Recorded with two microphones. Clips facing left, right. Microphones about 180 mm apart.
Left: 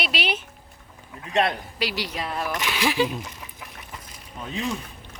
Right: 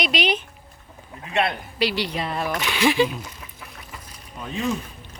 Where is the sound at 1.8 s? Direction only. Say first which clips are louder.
Right 5 dB; 10° left (ahead or behind).